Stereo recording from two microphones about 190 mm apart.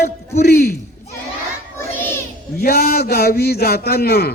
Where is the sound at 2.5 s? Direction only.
55° left (ahead or behind).